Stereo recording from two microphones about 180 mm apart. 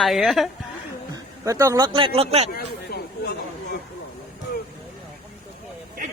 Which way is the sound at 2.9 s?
60° left (ahead or behind).